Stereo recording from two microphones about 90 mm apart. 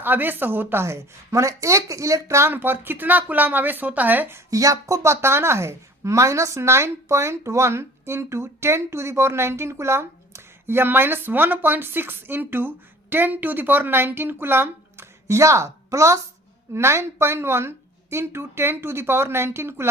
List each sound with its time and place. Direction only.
0.0 s a woman's voice: 20° right (ahead or behind)
4.5 s a woman's voice: 35° right (ahead or behind)